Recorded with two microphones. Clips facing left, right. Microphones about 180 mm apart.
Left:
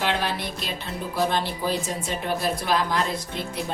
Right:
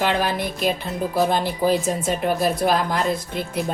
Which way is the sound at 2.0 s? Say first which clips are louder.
Right 5 dB; 50° right (ahead or behind).